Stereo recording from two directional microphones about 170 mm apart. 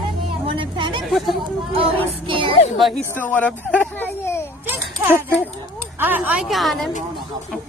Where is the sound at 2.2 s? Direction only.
30° right (ahead or behind).